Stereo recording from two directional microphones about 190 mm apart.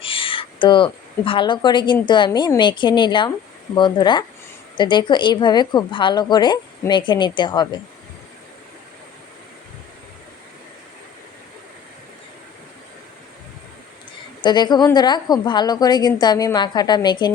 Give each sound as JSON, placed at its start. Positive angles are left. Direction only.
{"t": 0.0, "sound": "speech", "side_deg": 30}
{"t": 14.4, "sound": "speech", "side_deg": 20}